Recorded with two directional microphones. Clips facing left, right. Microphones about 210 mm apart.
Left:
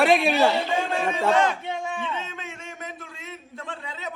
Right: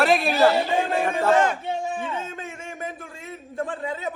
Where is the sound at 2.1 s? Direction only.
50° right (ahead or behind).